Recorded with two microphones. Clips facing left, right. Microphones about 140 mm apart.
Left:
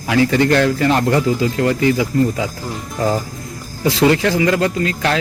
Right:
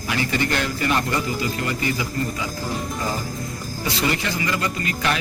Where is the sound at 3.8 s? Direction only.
90° left.